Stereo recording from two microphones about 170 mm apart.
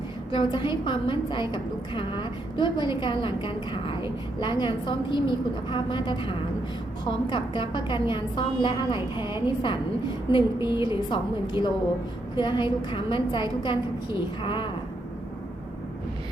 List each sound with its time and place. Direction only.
0.3 s a woman's voice: 25° left (ahead or behind)